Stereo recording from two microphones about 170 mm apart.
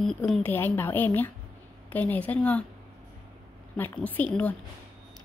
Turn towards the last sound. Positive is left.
turn(degrees=10)  # may be behind; listen again after turning